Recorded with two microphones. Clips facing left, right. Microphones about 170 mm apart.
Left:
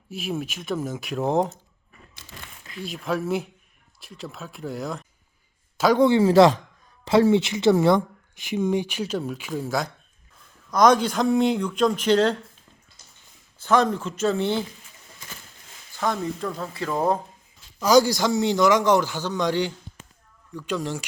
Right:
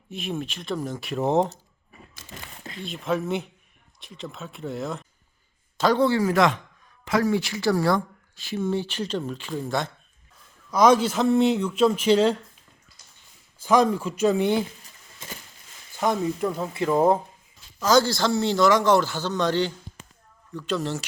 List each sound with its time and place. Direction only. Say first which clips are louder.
0.1 s speech: left 1 dB; 5° left (ahead or behind)
2.8 s speech: even; centre (ahead or behind)
5.7 s speech: left 3 dB; 10° left (ahead or behind); by 12.4 s 10° right (ahead or behind)
13.6 s speech: right 1 dB; 10° right (ahead or behind)
16.0 s speech: right 2 dB; 20° right (ahead or behind)
17.7 s speech: left 2 dB; 10° left (ahead or behind)